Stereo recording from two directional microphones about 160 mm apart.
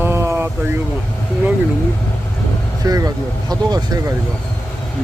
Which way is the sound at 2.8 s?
20° right (ahead or behind).